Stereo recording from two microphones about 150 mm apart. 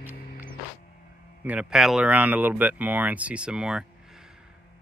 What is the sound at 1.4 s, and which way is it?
Speech, 5° right (ahead or behind).